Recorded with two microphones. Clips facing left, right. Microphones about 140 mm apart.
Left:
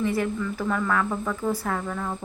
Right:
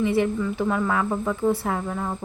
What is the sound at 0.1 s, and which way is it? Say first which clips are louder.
A woman's voice: right 4 dB; 25° right (ahead or behind).